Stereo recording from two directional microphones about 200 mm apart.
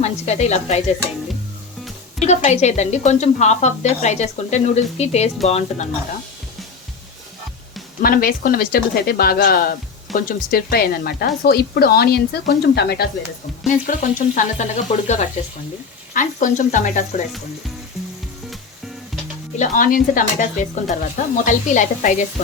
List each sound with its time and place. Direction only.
0.0 s a woman's voice: 35° left (ahead or behind)
2.2 s a woman's voice: 35° left (ahead or behind)
8.0 s speech: 45° left (ahead or behind)
13.7 s a woman's voice: 40° left (ahead or behind)
19.5 s a woman's voice: 40° left (ahead or behind)